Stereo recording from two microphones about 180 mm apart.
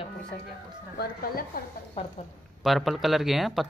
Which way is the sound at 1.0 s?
55° left (ahead or behind).